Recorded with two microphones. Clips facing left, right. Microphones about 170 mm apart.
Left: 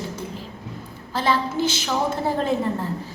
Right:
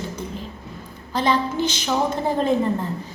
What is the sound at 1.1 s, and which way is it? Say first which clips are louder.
Speech: right 2 dB; 20° right (ahead or behind).